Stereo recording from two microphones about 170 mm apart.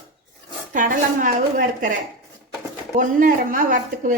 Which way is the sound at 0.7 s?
50° right (ahead or behind).